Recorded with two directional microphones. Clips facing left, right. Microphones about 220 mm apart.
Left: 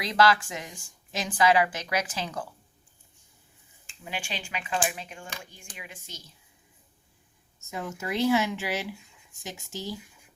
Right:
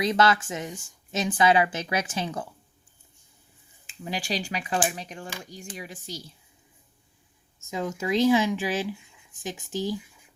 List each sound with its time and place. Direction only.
0.0 s speech: 25° right (ahead or behind)
4.1 s speech: 35° right (ahead or behind)
7.7 s speech: 15° right (ahead or behind)
9.9 s whispering: centre (ahead or behind)